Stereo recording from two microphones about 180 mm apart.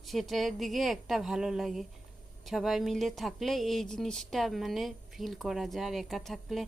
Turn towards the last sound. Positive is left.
turn(degrees=0)  # may be behind; listen again after turning